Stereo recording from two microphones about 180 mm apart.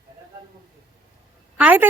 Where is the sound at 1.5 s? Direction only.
10° right (ahead or behind).